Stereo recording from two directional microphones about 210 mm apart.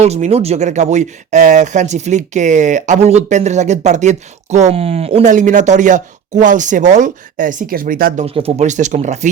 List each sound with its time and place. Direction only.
0.0 s speech: 30° right (ahead or behind)